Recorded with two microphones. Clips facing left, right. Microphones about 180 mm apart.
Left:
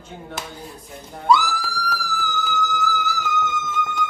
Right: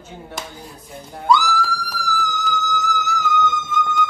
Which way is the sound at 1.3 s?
Centre (ahead or behind).